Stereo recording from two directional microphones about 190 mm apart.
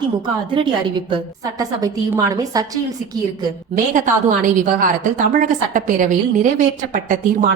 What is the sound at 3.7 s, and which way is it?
A woman's voice, 40° right (ahead or behind).